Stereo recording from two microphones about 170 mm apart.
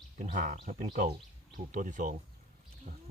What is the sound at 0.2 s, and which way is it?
Speech, 45° right (ahead or behind).